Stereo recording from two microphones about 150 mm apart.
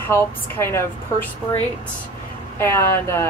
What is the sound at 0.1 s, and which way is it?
A woman's voice, 15° left (ahead or behind).